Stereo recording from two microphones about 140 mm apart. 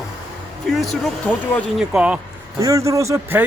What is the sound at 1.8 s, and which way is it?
Speech, 5° right (ahead or behind).